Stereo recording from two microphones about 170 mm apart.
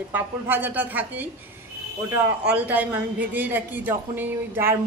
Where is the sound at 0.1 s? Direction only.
10° right (ahead or behind).